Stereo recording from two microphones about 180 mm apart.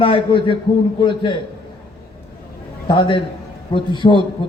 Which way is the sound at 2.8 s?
25° left (ahead or behind).